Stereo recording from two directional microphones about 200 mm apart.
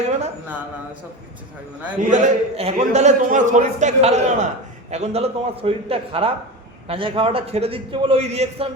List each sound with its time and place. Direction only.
2.0 s a man's voice: 40° right (ahead or behind)